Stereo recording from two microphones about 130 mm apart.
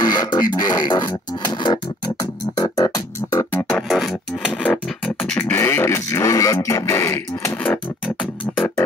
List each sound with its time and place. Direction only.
0.0 s a sound: 35° left (ahead or behind)
2.5 s beatboxing: 30° left (ahead or behind)
4.5 s beatboxing: 5° left (ahead or behind)
8.5 s music: 15° left (ahead or behind)